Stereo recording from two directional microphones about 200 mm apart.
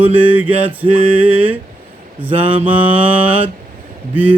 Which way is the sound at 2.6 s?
10° right (ahead or behind).